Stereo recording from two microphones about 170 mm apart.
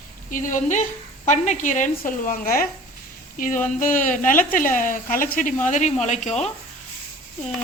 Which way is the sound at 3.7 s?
50° left (ahead or behind).